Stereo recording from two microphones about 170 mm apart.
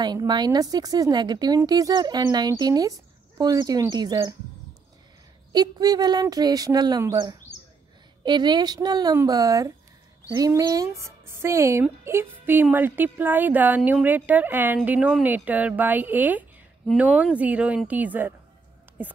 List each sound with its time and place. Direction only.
0.0 s speech: 25° right (ahead or behind)
5.5 s a woman's voice: 25° right (ahead or behind)